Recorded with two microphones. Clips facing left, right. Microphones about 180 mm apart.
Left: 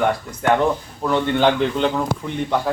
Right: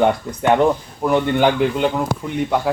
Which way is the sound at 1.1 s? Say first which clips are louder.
Right 1 dB; 10° right (ahead or behind).